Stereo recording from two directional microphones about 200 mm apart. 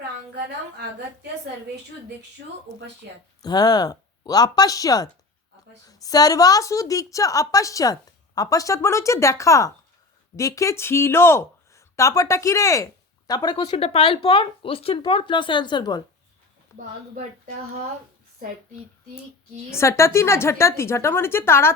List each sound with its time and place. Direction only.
3.0 s a woman's voice: 55° right (ahead or behind)
3.4 s a woman's voice: 20° left (ahead or behind)
19.7 s a woman's voice: 15° left (ahead or behind)